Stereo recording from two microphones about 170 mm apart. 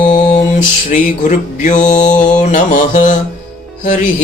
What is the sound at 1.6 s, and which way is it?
Mantra, 50° left (ahead or behind).